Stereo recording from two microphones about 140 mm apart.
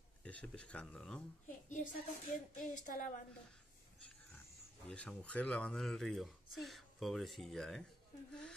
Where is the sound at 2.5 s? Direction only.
70° left (ahead or behind).